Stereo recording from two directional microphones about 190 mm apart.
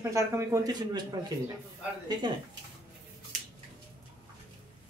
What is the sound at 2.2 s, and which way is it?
Speech, 25° right (ahead or behind).